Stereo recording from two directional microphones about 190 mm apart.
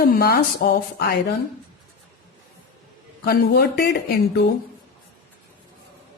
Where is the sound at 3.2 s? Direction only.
55° left (ahead or behind).